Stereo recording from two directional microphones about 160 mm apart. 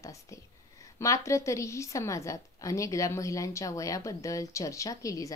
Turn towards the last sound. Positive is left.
turn(degrees=20)  # may be behind; listen again after turning